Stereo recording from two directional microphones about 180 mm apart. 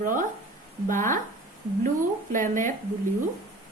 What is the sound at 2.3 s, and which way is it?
Speech, 45° right (ahead or behind).